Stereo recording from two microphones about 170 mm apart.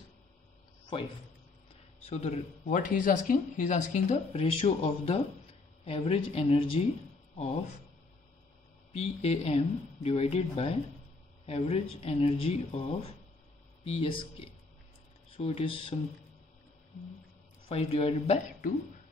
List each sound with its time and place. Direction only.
0.9 s speech: 35° left (ahead or behind)
8.9 s speech: 35° left (ahead or behind)
17.6 s speech: 35° left (ahead or behind)